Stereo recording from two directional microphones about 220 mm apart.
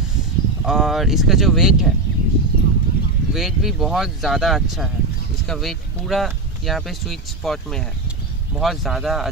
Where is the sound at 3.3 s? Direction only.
Centre (ahead or behind).